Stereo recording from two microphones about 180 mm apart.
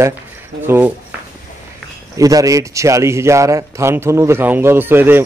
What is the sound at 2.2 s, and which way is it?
A man's voice, 20° right (ahead or behind).